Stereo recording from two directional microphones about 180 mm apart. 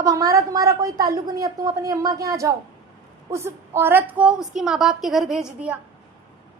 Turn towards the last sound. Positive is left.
turn(degrees=-5)  # may be behind; listen again after turning